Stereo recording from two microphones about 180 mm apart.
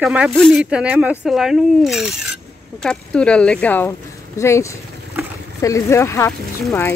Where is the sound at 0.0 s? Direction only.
5° right (ahead or behind).